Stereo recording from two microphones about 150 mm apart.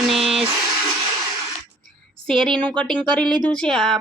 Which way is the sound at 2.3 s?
35° right (ahead or behind).